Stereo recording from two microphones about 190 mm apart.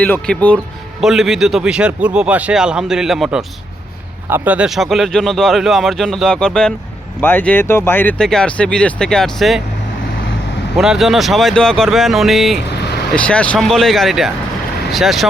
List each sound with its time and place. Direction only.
0.0 s speech: 5° left (ahead or behind)
10.8 s speech: centre (ahead or behind)
12.7 s vehicle: 60° left (ahead or behind)
13.1 s speech: 5° left (ahead or behind)